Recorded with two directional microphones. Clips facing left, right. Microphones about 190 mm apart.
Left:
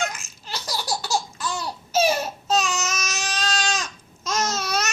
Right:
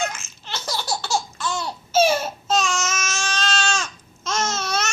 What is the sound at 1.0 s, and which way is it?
Laughter, 35° left (ahead or behind).